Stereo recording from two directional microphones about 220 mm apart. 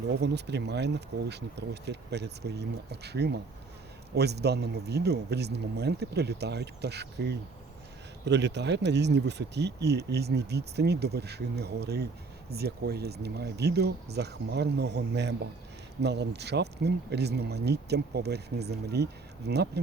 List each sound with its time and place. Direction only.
0.2 s speech: 50° right (ahead or behind)